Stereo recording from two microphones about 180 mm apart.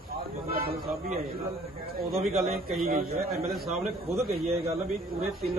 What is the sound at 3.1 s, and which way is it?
Speech, 60° right (ahead or behind).